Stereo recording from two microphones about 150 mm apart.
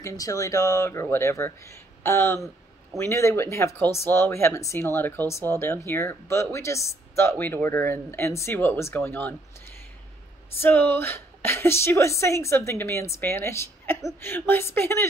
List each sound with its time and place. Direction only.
0.0 s speech: 20° left (ahead or behind)
10.6 s speech: 15° left (ahead or behind)